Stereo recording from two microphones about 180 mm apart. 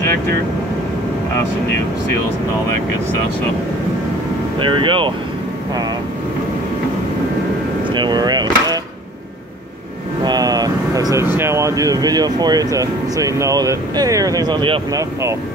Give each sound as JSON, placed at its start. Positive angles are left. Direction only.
{"t": 4.6, "sound": "speech", "side_deg": -30}
{"t": 7.9, "sound": "speech", "side_deg": -25}
{"t": 10.2, "sound": "speech", "side_deg": -20}